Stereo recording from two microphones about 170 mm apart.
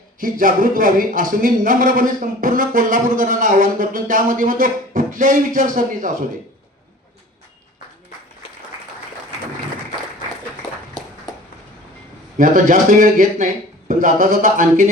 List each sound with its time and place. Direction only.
0.2 s speech: 55° right (ahead or behind)
12.4 s speech: 50° right (ahead or behind)